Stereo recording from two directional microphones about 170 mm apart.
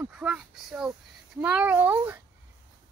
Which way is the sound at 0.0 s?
10° right (ahead or behind).